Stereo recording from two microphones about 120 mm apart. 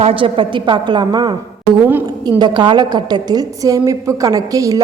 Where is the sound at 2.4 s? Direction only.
40° right (ahead or behind).